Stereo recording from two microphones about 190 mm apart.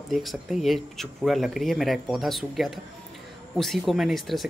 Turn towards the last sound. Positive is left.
turn(degrees=0)  # may be behind; listen again after turning